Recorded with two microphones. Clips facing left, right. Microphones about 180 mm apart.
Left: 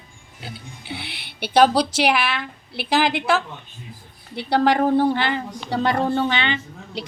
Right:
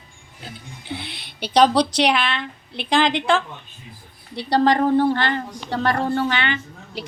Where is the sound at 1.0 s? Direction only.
65° left (ahead or behind).